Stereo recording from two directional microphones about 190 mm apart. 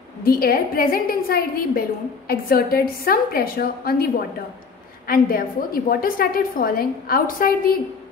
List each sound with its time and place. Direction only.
0.2 s a woman's voice: 50° left (ahead or behind)